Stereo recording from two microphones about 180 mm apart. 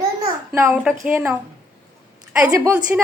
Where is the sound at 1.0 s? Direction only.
15° right (ahead or behind).